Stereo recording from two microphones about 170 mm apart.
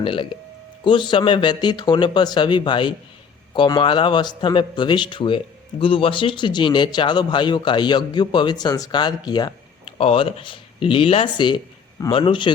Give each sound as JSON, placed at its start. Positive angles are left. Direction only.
{"t": 0.0, "sound": "a man's voice", "side_deg": 30}